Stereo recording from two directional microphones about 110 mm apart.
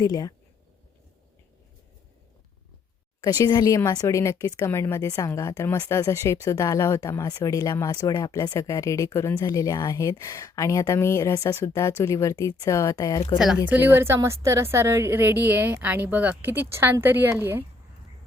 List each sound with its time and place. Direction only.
0.0 s speech: 35° left (ahead or behind)
3.2 s a woman's voice: 40° left (ahead or behind)
13.7 s a woman's voice: 15° right (ahead or behind)